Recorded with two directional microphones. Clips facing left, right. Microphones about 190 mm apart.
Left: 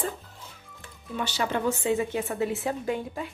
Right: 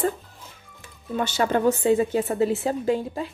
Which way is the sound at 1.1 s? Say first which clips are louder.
Right 6 dB; 45° right (ahead or behind).